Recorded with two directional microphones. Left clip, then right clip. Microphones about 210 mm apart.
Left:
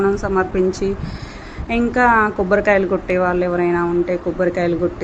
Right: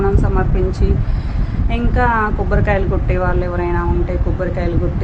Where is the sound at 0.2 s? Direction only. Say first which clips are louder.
Left 3 dB; 20° left (ahead or behind).